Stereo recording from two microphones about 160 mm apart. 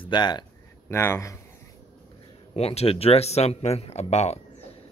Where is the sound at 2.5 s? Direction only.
40° left (ahead or behind).